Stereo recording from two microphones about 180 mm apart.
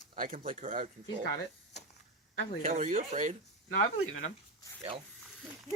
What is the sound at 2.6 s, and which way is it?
Speech, 40° right (ahead or behind).